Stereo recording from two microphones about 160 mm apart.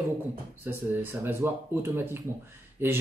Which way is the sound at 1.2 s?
15° right (ahead or behind).